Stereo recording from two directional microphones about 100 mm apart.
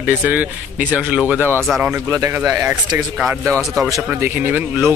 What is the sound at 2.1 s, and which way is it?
Speech, 30° right (ahead or behind).